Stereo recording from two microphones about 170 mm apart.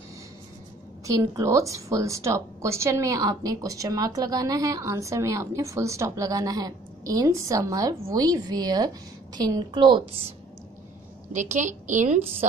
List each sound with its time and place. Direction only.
1.1 s a woman's voice: 20° right (ahead or behind)
11.5 s a woman's voice: 45° right (ahead or behind)